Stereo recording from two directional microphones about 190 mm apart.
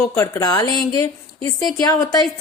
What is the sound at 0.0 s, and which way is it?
A woman's voice, 15° left (ahead or behind).